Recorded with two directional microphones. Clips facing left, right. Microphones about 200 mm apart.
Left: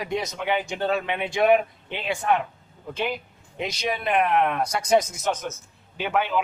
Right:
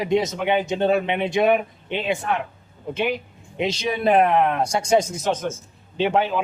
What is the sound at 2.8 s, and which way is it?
Speech, 20° right (ahead or behind).